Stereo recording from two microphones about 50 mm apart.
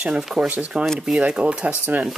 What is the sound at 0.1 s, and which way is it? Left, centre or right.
Speech, centre.